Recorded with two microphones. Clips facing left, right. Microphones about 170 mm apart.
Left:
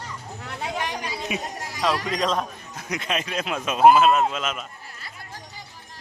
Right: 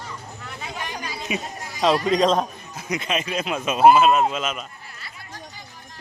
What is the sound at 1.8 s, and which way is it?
Speech, 25° right (ahead or behind).